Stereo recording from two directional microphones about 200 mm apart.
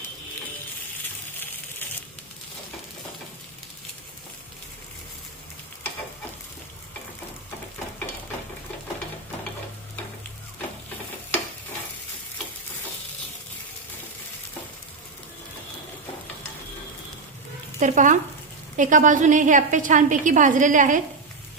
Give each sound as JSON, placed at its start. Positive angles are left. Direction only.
{"t": 17.7, "sound": "frying", "side_deg": -40}
{"t": 18.8, "sound": "a woman's voice", "side_deg": -40}